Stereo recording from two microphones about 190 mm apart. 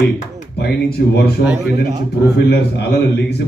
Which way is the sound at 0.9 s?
60° left (ahead or behind).